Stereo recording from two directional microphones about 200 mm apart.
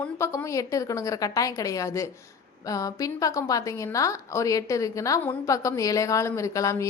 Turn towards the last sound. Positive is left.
turn(degrees=15)  # may be behind; listen again after turning